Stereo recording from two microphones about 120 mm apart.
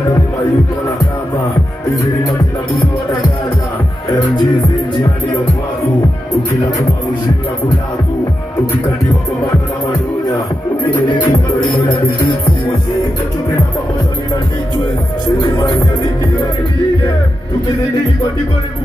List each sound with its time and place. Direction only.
4.4 s music: 40° left (ahead or behind)
11.1 s music: 40° left (ahead or behind)
15.4 s music: 35° left (ahead or behind)